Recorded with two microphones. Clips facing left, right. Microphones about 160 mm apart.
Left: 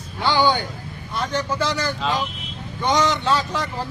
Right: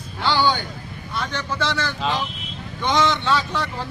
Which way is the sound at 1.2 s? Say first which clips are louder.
Left 5 dB; 40° left (ahead or behind).